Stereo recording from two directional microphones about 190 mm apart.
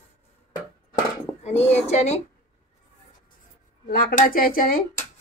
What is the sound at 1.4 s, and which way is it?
Speech, 35° left (ahead or behind).